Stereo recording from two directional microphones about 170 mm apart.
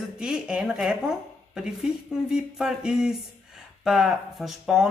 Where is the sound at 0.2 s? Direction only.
5° right (ahead or behind).